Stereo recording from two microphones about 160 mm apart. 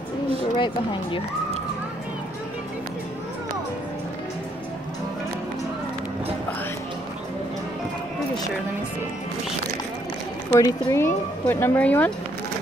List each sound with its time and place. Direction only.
10.5 s speech: 20° left (ahead or behind)